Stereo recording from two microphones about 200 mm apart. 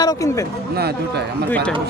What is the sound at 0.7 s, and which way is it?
Speech, 55° right (ahead or behind).